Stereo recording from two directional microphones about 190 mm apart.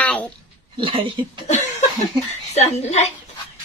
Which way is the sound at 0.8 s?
25° right (ahead or behind).